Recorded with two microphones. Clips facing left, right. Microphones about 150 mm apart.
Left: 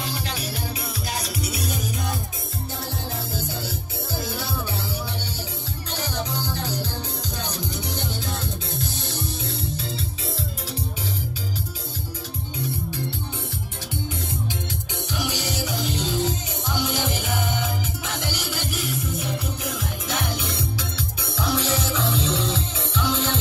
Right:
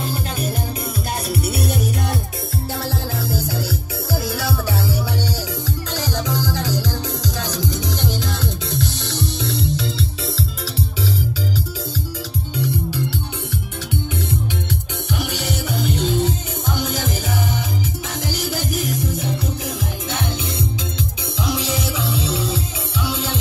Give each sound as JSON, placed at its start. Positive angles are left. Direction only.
{"t": 0.0, "sound": "music", "side_deg": -50}
{"t": 2.8, "sound": "music", "side_deg": -80}
{"t": 5.9, "sound": "music", "side_deg": -90}
{"t": 12.5, "sound": "music", "side_deg": -85}
{"t": 15.1, "sound": "music", "side_deg": -55}
{"t": 19.1, "sound": "music", "side_deg": -30}
{"t": 21.4, "sound": "music", "side_deg": -15}